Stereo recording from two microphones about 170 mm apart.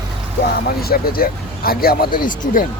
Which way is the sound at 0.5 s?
65° left (ahead or behind).